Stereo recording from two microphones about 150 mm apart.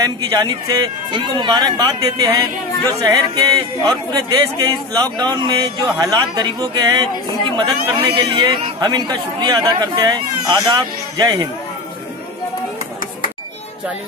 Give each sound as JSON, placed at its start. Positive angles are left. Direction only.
{"t": 0.0, "sound": "speech", "side_deg": -25}